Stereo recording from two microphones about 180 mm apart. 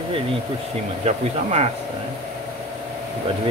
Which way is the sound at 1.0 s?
35° right (ahead or behind).